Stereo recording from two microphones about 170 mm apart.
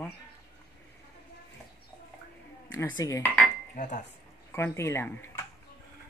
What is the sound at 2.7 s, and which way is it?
Speech, 20° left (ahead or behind).